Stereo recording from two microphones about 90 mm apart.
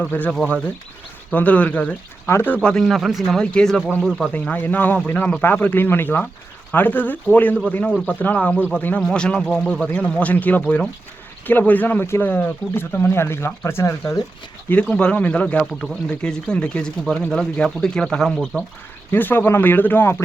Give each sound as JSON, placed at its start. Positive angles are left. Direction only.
{"t": 0.0, "sound": "speech", "side_deg": 15}
{"t": 3.4, "sound": "speech", "side_deg": 10}
{"t": 14.7, "sound": "speech", "side_deg": 15}
{"t": 19.1, "sound": "speech", "side_deg": 20}